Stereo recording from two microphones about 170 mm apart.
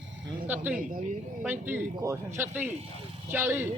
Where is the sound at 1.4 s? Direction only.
10° right (ahead or behind).